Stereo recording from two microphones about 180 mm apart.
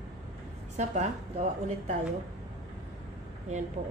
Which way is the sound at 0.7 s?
40° right (ahead or behind).